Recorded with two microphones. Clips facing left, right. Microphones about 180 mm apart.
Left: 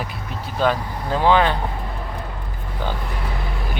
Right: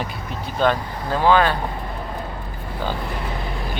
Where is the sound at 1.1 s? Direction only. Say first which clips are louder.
Even; 15° left (ahead or behind).